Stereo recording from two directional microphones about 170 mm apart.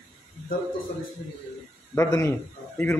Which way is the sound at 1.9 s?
15° left (ahead or behind).